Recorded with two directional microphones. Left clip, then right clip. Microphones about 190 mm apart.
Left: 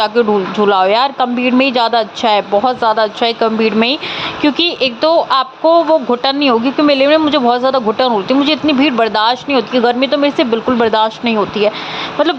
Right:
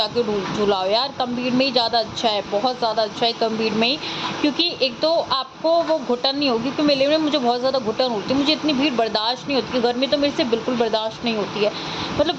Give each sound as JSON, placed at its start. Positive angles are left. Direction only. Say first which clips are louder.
{"t": 0.7, "sound": "speech", "louder": "left 9 dB", "side_deg": 25}